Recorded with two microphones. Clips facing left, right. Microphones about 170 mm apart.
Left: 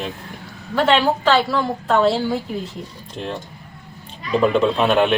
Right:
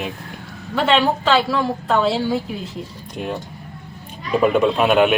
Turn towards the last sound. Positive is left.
turn(degrees=-5)  # may be behind; listen again after turning